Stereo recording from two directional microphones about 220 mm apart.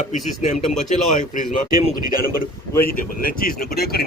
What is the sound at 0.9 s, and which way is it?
Speech, 35° left (ahead or behind).